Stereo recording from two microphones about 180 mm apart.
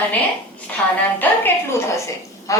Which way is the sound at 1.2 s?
10° left (ahead or behind).